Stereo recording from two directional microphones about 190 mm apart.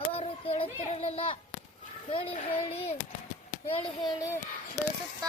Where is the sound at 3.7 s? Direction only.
20° left (ahead or behind).